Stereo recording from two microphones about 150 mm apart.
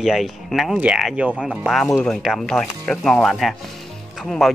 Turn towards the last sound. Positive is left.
turn(degrees=0)  # may be behind; listen again after turning